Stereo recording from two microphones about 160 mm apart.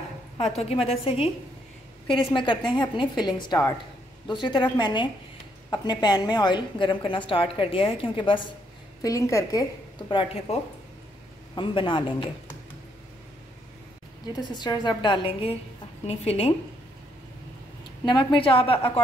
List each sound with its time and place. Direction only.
0.4 s a woman's voice: 40° left (ahead or behind)
9.0 s a woman's voice: 20° left (ahead or behind)
14.3 s a woman's voice: 25° left (ahead or behind)
18.0 s a woman's voice: 30° left (ahead or behind)